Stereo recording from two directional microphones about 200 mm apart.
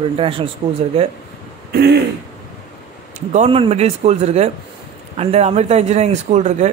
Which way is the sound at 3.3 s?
30° right (ahead or behind).